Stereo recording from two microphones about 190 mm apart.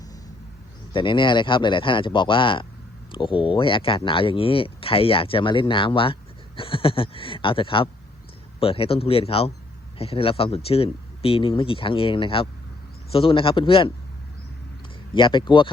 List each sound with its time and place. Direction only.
0.9 s speech: 25° left (ahead or behind)
15.1 s speech: 25° left (ahead or behind)